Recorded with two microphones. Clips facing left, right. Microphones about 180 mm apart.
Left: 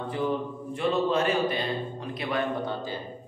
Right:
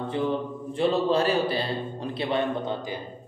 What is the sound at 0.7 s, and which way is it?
A man's voice, 35° right (ahead or behind).